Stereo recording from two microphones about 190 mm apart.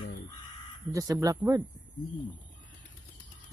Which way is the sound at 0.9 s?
20° right (ahead or behind).